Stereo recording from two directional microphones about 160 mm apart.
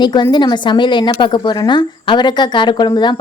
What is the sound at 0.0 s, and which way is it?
Speech, 30° left (ahead or behind).